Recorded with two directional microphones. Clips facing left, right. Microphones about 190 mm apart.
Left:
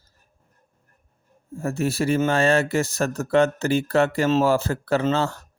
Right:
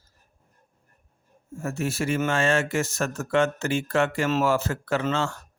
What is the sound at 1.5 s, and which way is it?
Speech, 35° left (ahead or behind).